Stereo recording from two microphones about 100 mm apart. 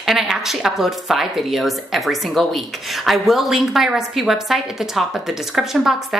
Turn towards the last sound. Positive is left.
turn(degrees=-5)  # may be behind; listen again after turning